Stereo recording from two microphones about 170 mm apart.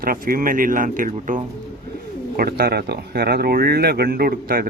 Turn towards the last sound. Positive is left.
turn(degrees=-60)  # may be behind; listen again after turning